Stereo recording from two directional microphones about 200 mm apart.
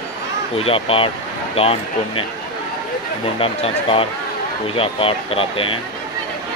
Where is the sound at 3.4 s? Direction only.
25° left (ahead or behind).